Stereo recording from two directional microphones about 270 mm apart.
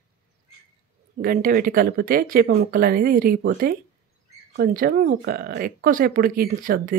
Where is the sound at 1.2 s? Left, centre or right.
Right.